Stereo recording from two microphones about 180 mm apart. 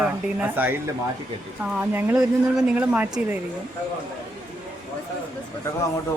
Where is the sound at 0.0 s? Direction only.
10° right (ahead or behind).